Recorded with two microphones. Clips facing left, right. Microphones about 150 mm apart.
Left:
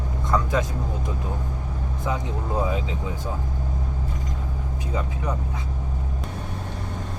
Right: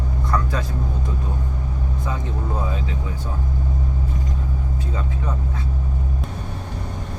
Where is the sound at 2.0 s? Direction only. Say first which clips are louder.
Left 2 dB; 20° left (ahead or behind).